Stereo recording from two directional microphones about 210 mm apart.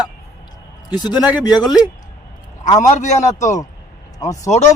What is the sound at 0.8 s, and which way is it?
Speech, 20° left (ahead or behind).